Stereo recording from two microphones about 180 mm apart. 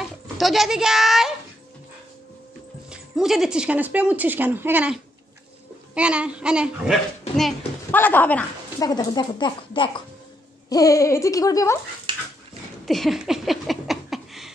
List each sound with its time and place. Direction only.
0.0 s a child's voice: centre (ahead or behind)
2.9 s a child's voice: centre (ahead or behind)
8.7 s speech: 20° left (ahead or behind)
12.8 s a sound: centre (ahead or behind)